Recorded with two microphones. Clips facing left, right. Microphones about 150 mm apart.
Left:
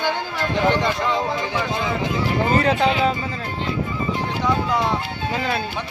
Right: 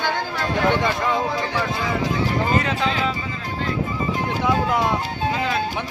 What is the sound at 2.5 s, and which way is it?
Speech, 35° left (ahead or behind).